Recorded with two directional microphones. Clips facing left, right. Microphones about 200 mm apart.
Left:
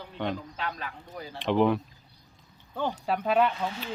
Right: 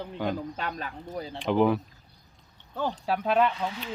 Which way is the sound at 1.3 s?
Centre (ahead or behind).